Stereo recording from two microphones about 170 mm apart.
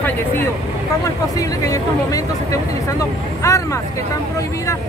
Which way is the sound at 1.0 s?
20° left (ahead or behind).